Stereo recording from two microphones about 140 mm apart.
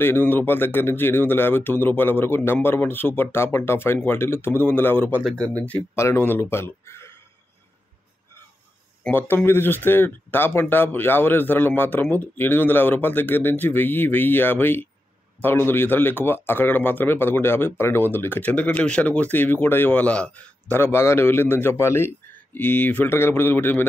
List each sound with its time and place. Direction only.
0.0 s speech: 15° left (ahead or behind)
9.0 s speech: 10° left (ahead or behind)